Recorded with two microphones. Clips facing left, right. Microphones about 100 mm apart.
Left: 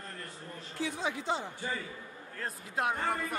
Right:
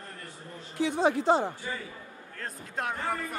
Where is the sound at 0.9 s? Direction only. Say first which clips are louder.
Right 12 dB; 50° right (ahead or behind).